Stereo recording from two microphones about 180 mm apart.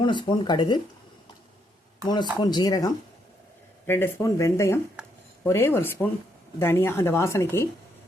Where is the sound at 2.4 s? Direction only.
25° left (ahead or behind).